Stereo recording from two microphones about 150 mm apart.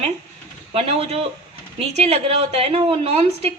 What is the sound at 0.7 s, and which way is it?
A woman's voice, 40° right (ahead or behind).